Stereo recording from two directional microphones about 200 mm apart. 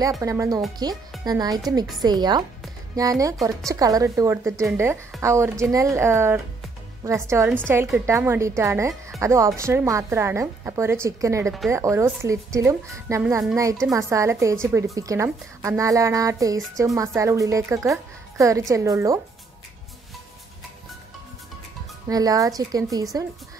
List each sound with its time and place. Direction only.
0.2 s a woman's voice: 15° right (ahead or behind)
22.0 s a woman's voice: 20° right (ahead or behind)